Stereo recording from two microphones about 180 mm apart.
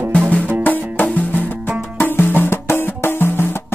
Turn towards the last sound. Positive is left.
turn(degrees=10)  # may be behind; listen again after turning